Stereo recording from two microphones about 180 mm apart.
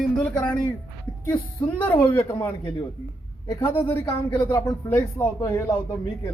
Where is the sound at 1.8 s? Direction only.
30° left (ahead or behind).